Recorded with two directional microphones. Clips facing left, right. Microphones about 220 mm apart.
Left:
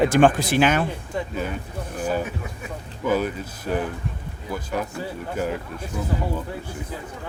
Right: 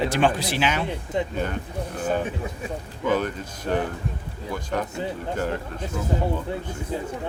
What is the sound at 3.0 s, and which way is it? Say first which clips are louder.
Speech: left 1 dB; 10° left (ahead or behind).